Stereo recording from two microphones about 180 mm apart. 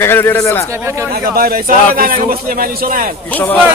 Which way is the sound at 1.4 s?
55° right (ahead or behind).